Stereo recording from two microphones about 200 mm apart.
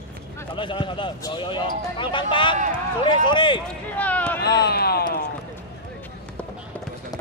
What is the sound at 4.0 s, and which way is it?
Speech, 10° left (ahead or behind).